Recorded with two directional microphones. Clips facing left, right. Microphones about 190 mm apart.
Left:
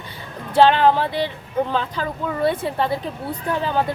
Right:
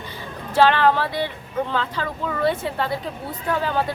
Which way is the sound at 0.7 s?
20° left (ahead or behind).